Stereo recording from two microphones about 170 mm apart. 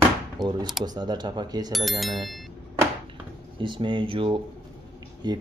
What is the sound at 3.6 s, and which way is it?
Speech, 30° right (ahead or behind).